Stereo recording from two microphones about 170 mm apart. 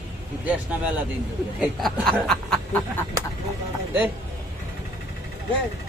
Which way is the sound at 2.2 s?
5° left (ahead or behind).